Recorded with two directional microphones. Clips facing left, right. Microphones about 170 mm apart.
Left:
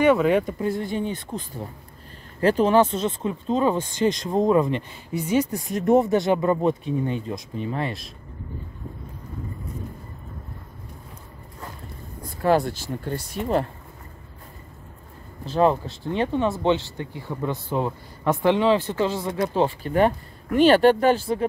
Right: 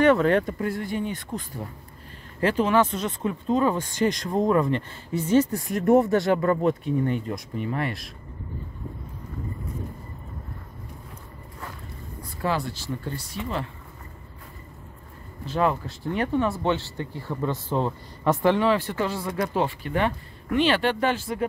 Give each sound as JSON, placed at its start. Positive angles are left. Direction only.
{"t": 0.0, "sound": "speech", "side_deg": 10}
{"t": 0.7, "sound": "speech", "side_deg": 25}
{"t": 2.4, "sound": "speech", "side_deg": 35}
{"t": 12.4, "sound": "speech", "side_deg": 50}
{"t": 15.4, "sound": "speech", "side_deg": 30}
{"t": 20.0, "sound": "speech", "side_deg": 45}